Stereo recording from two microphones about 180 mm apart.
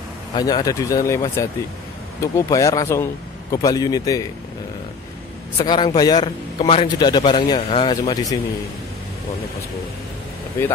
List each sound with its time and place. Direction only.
0.3 s a man's voice: 20° left (ahead or behind)
5.6 s a man's voice: 25° left (ahead or behind)